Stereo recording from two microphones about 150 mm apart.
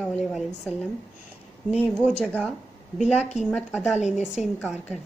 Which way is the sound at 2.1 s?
5° left (ahead or behind).